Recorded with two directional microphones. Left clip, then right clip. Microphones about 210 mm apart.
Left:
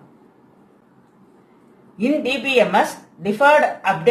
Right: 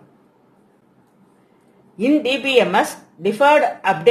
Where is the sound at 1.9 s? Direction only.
50° right (ahead or behind).